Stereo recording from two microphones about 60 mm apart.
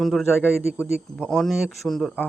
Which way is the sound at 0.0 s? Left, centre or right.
Centre.